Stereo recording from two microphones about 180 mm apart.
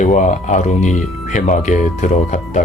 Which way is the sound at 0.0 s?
40° left (ahead or behind).